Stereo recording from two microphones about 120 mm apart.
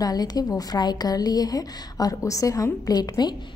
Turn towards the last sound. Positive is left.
turn(degrees=35)  # may be behind; listen again after turning